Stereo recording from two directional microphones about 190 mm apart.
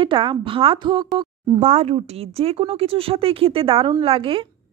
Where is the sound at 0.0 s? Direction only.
25° right (ahead or behind).